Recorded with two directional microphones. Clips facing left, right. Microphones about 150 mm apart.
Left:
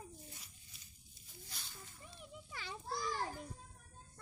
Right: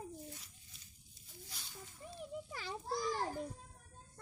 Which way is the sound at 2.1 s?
40° right (ahead or behind).